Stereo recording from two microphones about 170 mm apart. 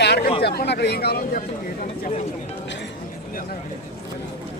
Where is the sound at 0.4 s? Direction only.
75° left (ahead or behind); by 1.5 s 60° left (ahead or behind).